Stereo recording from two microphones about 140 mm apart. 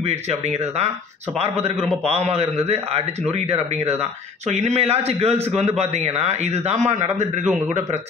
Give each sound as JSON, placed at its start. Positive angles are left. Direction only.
{"t": 0.0, "sound": "a man's voice", "side_deg": -50}